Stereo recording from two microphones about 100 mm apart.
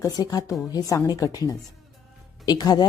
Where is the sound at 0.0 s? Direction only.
35° left (ahead or behind).